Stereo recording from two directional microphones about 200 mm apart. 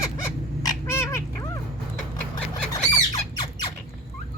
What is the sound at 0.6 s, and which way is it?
Cat, 15° left (ahead or behind).